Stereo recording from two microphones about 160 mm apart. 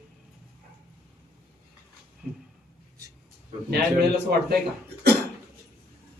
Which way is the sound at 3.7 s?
90° right.